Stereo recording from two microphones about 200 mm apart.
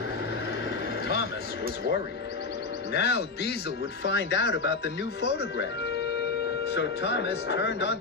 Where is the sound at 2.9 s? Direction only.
55° left (ahead or behind).